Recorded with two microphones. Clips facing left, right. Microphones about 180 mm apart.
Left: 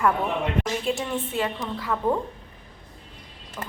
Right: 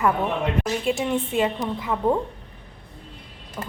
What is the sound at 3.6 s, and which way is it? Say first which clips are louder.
Speech: right 3 dB; 10° right (ahead or behind).